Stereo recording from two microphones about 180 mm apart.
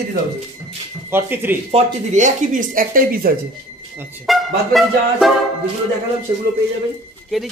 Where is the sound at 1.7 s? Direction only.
40° right (ahead or behind).